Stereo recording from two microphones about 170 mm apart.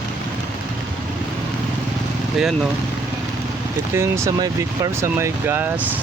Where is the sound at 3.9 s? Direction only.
15° right (ahead or behind).